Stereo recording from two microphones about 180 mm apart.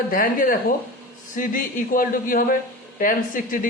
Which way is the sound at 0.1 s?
50° left (ahead or behind).